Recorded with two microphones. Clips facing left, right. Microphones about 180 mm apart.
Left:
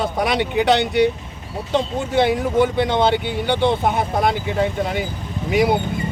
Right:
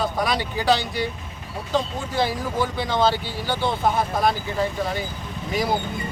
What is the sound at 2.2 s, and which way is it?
Speech, 65° left (ahead or behind).